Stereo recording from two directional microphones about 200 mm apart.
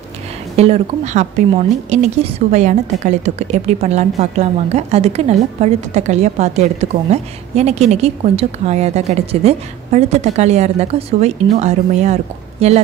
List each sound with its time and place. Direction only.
0.6 s speech: 30° right (ahead or behind)